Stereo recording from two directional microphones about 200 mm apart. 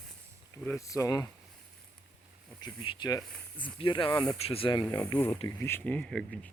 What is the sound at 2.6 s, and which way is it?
Speech, 20° left (ahead or behind).